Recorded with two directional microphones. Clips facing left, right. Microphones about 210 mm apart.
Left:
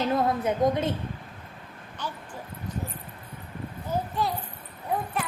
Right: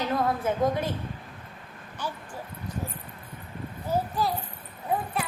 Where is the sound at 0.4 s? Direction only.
20° left (ahead or behind).